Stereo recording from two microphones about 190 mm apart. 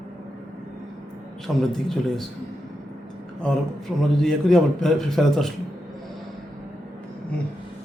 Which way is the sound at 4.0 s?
5° left (ahead or behind).